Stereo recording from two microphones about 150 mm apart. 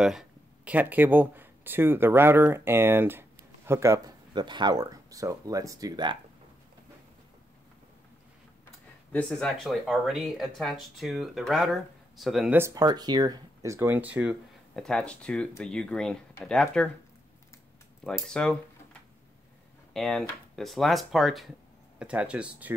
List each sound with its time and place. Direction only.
0.0 s speech: 5° right (ahead or behind); by 4.1 s 20° right (ahead or behind)
4.3 s speech: 30° right (ahead or behind)
9.1 s speech: centre (ahead or behind)
12.5 s speech: 20° right (ahead or behind)
14.8 s speech: 5° left (ahead or behind)
18.0 s speech: 5° left (ahead or behind)
19.9 s speech: centre (ahead or behind)